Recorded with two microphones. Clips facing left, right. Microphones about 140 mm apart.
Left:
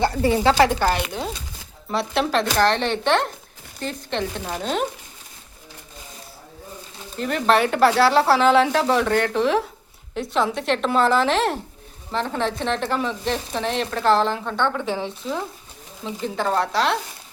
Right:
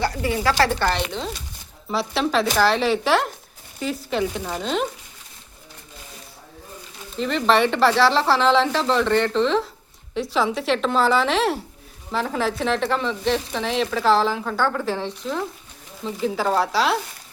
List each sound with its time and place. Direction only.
0.0 s a woman's voice: 30° left (ahead or behind)
0.5 s speech: 15° left (ahead or behind)
7.2 s speech: 5° left (ahead or behind)
10.2 s speech: centre (ahead or behind)